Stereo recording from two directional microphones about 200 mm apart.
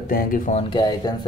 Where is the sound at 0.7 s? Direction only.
20° left (ahead or behind).